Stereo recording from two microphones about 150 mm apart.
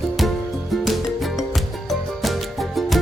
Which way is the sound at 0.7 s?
Centre (ahead or behind).